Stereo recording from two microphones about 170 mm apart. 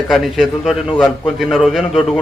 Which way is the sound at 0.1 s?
Centre (ahead or behind).